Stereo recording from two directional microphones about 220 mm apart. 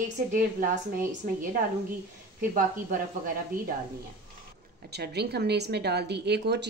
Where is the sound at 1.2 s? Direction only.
35° right (ahead or behind).